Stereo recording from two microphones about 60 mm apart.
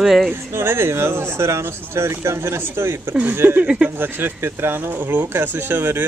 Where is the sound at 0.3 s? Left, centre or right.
Right.